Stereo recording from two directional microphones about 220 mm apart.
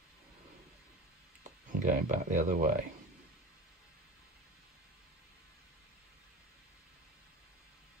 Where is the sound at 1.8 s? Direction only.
35° right (ahead or behind).